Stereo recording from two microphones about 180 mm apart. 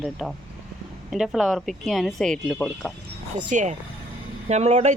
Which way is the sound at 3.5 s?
45° right (ahead or behind).